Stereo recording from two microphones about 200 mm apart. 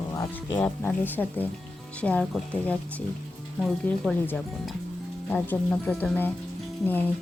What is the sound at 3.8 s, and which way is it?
Speech, centre (ahead or behind).